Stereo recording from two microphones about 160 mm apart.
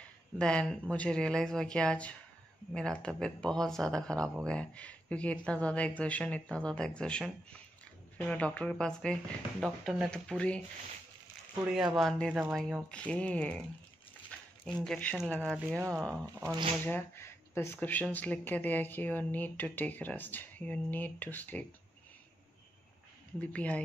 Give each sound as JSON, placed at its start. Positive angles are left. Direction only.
{"t": 0.4, "sound": "speech", "side_deg": 5}
{"t": 11.7, "sound": "speech", "side_deg": 0}
{"t": 12.3, "sound": "speech", "side_deg": -10}
{"t": 12.9, "sound": "speech", "side_deg": 5}
{"t": 16.8, "sound": "speech", "side_deg": 15}
{"t": 23.4, "sound": "speech", "side_deg": 10}